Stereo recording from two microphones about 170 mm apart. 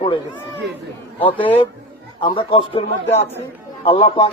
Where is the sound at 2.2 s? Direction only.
30° left (ahead or behind).